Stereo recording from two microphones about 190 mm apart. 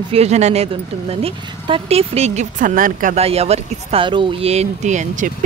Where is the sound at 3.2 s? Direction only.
35° right (ahead or behind).